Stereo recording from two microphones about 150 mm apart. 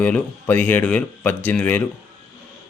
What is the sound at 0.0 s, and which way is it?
Speech, 10° left (ahead or behind).